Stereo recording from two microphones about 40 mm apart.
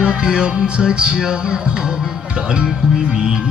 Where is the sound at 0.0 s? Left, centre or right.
Right.